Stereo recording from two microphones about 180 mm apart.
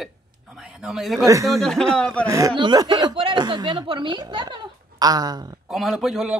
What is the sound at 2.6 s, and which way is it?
Speech, 25° right (ahead or behind).